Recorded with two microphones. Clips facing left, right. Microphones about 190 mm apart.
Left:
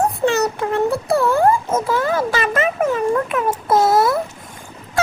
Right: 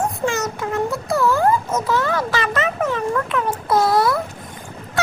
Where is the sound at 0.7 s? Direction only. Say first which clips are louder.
Left 2 dB; 30° left (ahead or behind).